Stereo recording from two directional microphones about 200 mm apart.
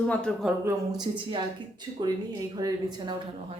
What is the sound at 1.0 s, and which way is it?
A woman's voice, 20° right (ahead or behind).